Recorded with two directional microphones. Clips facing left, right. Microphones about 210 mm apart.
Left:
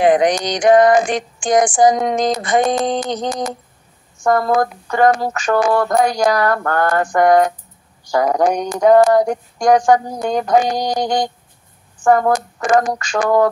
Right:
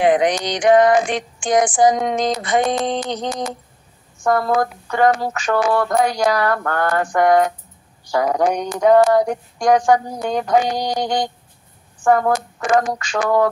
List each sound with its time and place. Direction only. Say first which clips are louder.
0.0 s female singing: left 2 dB; 45° left (ahead or behind)